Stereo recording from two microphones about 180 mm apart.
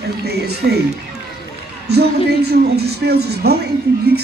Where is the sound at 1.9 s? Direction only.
65° right (ahead or behind).